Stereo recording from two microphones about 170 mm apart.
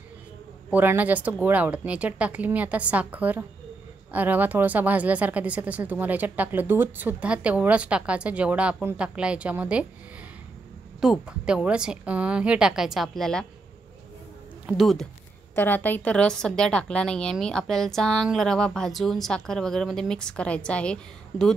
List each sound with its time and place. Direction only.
0.7 s a woman's voice: 10° right (ahead or behind)
11.0 s a woman's voice: 5° right (ahead or behind)
14.7 s a woman's voice: centre (ahead or behind)
15.5 s a woman's voice: 10° left (ahead or behind)